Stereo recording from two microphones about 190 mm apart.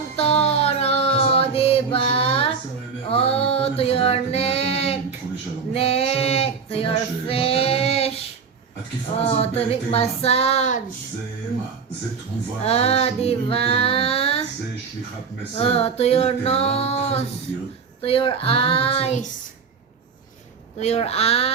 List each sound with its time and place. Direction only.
0.2 s child singing: 30° left (ahead or behind)
3.1 s a sound: 30° left (ahead or behind)
5.7 s female singing: 30° left (ahead or behind)
9.4 s female singing: 30° left (ahead or behind)
12.6 s female singing: 35° left (ahead or behind)
15.5 s female singing: 30° left (ahead or behind)
20.7 s female singing: 35° left (ahead or behind)